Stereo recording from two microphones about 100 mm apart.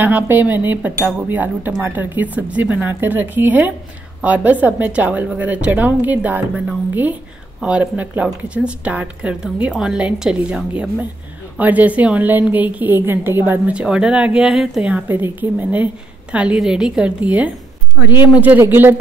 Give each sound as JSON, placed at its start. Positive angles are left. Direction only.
{"t": 0.0, "sound": "a woman's voice", "side_deg": -20}
{"t": 15.0, "sound": "a woman's voice", "side_deg": -20}